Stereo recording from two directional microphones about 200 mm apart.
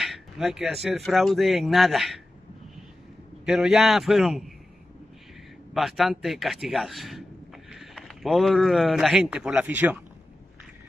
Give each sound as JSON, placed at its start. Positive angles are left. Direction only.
{"t": 0.0, "sound": "speech", "side_deg": 0}
{"t": 3.4, "sound": "speech", "side_deg": -5}
{"t": 5.7, "sound": "a man's voice", "side_deg": 0}